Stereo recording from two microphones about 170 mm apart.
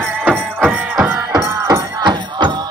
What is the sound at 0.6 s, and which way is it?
Music, 5° right (ahead or behind).